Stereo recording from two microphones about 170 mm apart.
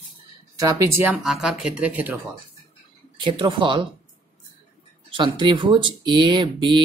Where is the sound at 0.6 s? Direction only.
20° right (ahead or behind).